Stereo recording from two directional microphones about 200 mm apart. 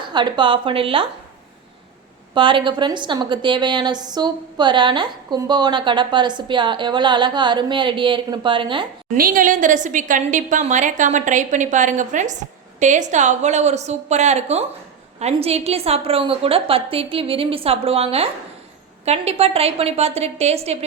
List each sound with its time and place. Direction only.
0.1 s a woman's voice: 20° right (ahead or behind)
2.3 s a woman's voice: 25° right (ahead or behind)
9.1 s a woman's voice: 45° right (ahead or behind)